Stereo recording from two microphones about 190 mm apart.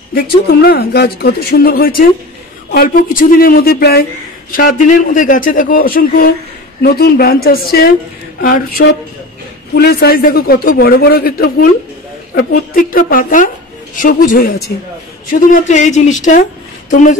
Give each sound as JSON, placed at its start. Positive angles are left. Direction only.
{"t": 0.1, "sound": "speech", "side_deg": 55}